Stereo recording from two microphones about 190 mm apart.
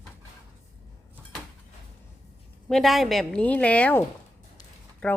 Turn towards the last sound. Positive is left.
turn(degrees=5)  # may be behind; listen again after turning